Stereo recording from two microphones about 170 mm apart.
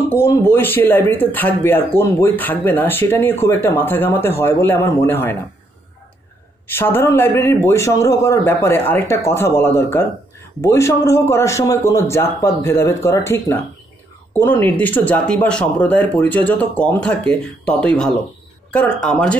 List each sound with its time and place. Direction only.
0.1 s speech: 15° left (ahead or behind)
6.7 s speech: 15° left (ahead or behind)